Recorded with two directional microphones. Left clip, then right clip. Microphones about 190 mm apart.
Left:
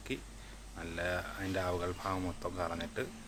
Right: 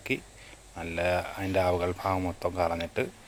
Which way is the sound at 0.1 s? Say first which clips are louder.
Right 9 dB; 25° right (ahead or behind).